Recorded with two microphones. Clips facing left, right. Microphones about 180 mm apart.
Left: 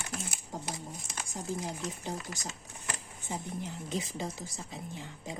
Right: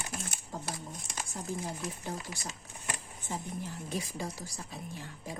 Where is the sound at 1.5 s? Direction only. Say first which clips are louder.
Left 2 dB; 15° right (ahead or behind).